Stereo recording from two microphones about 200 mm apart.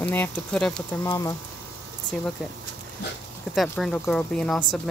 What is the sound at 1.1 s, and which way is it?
Speech, 15° left (ahead or behind).